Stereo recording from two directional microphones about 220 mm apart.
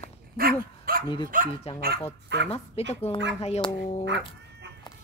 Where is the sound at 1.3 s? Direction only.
40° right (ahead or behind).